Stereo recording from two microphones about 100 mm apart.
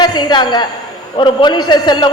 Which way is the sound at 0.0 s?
45° left (ahead or behind).